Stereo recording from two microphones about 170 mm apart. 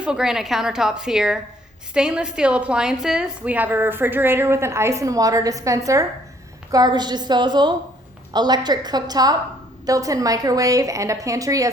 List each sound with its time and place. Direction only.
0.0 s a woman's voice: 5° right (ahead or behind); by 11.7 s 20° right (ahead or behind)